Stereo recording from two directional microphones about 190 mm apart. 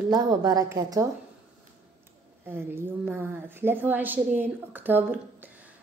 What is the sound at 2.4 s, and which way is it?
A woman's voice, 10° right (ahead or behind).